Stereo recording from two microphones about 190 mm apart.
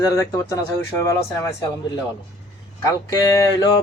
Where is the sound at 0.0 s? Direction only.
20° left (ahead or behind).